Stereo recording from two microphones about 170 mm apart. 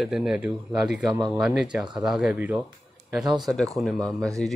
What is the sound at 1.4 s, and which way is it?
Speech, 5° right (ahead or behind).